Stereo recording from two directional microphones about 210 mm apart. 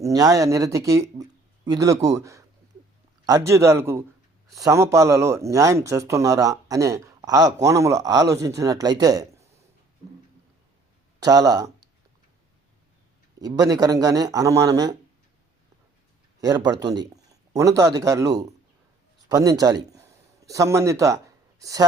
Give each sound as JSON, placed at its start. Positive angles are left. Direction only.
{"t": 0.0, "sound": "speech", "side_deg": -15}
{"t": 11.2, "sound": "speech", "side_deg": -15}
{"t": 13.4, "sound": "speech", "side_deg": -15}
{"t": 16.4, "sound": "a man's voice", "side_deg": -20}